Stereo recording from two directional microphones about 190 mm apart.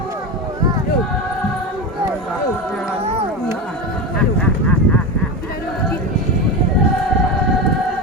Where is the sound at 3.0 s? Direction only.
30° right (ahead or behind).